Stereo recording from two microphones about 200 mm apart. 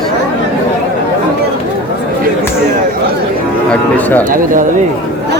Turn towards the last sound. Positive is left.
turn(degrees=-45)  # may be behind; listen again after turning